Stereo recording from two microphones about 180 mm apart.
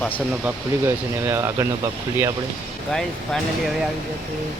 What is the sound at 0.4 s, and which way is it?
Speech, 15° right (ahead or behind).